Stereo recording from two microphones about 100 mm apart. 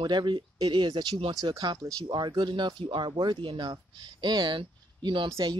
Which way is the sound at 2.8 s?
65° right (ahead or behind).